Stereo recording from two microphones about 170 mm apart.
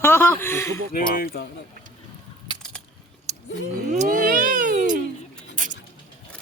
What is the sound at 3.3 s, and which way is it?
Vehicle, 40° right (ahead or behind).